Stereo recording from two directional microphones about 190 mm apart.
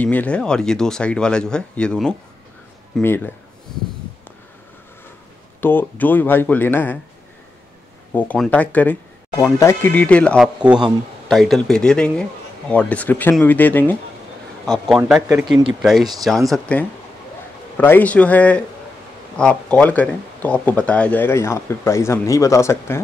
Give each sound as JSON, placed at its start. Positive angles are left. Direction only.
{"t": 0.0, "sound": "speech", "side_deg": 10}
{"t": 5.6, "sound": "speech", "side_deg": 10}
{"t": 8.1, "sound": "speech", "side_deg": 10}
{"t": 15.0, "sound": "speech", "side_deg": -5}